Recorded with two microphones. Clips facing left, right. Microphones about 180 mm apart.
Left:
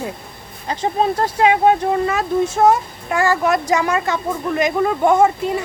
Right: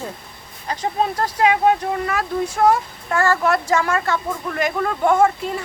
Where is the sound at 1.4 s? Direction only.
25° left (ahead or behind).